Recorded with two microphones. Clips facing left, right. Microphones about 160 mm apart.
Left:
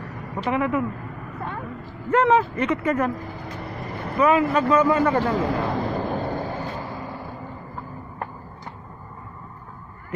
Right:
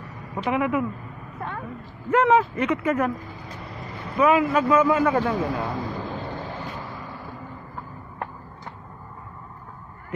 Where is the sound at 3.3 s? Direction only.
60° left (ahead or behind).